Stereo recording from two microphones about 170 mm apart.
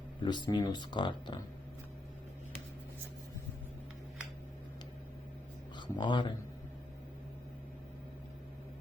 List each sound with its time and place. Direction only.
0.2 s speech: 25° left (ahead or behind)
5.7 s speech: 25° left (ahead or behind)